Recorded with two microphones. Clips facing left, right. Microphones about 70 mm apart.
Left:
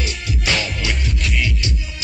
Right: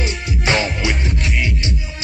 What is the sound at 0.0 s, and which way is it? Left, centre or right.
Music, right.